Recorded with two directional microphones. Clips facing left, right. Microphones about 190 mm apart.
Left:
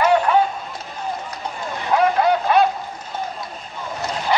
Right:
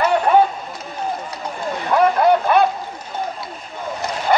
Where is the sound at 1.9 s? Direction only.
50° right (ahead or behind).